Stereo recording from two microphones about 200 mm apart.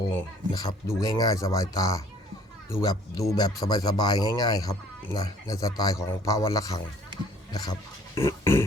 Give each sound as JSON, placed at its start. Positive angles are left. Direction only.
{"t": 0.0, "sound": "a man's voice", "side_deg": 20}